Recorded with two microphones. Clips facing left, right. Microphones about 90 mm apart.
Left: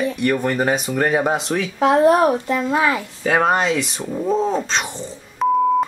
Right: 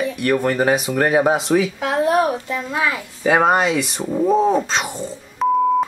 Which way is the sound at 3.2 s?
5° right (ahead or behind).